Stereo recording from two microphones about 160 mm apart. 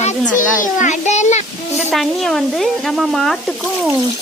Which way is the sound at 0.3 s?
55° left (ahead or behind).